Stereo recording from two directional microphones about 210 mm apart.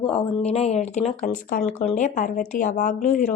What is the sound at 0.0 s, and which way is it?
A woman's voice, 25° left (ahead or behind).